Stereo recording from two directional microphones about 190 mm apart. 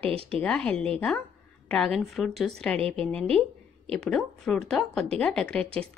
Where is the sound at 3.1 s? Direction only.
5° left (ahead or behind).